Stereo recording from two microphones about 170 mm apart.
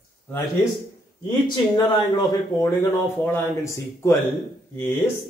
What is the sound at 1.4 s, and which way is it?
Speech, 25° left (ahead or behind).